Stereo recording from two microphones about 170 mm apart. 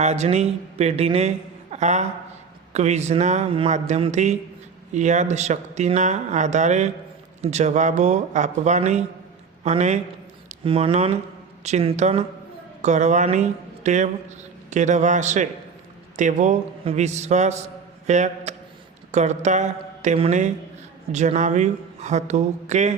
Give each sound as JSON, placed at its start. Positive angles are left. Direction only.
{"t": 0.0, "sound": "a man's voice", "side_deg": -40}
{"t": 10.6, "sound": "a man's voice", "side_deg": -30}